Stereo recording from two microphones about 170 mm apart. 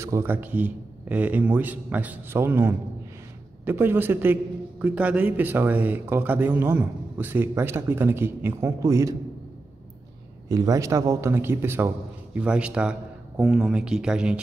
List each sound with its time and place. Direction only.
0.0 s a man's voice: 15° right (ahead or behind)
10.5 s a man's voice: 20° right (ahead or behind)